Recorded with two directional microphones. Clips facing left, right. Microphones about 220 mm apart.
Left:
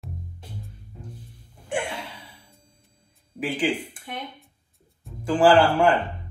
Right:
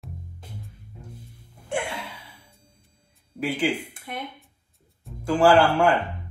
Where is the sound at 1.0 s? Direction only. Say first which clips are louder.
Left 1 dB; 10° right (ahead or behind).